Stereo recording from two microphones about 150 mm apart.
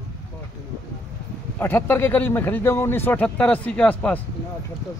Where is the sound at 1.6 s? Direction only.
15° left (ahead or behind).